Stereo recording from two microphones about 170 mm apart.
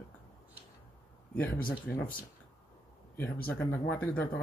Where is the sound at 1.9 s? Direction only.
90° left.